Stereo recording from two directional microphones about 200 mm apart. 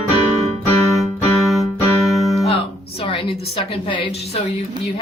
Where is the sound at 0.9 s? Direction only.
Centre (ahead or behind).